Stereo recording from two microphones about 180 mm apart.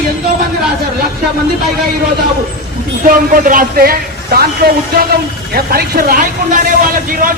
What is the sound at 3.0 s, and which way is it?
A man's voice, 50° right (ahead or behind).